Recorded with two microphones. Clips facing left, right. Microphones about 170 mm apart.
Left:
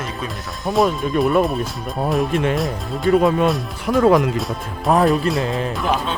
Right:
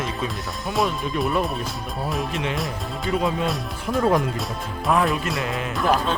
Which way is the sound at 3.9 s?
80° left.